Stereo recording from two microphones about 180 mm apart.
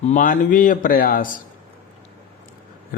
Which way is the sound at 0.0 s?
45° left (ahead or behind).